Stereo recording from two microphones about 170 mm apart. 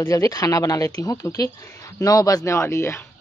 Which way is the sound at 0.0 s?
20° left (ahead or behind).